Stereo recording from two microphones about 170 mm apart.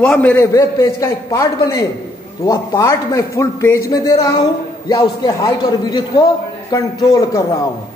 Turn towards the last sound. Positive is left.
turn(degrees=20)  # may be behind; listen again after turning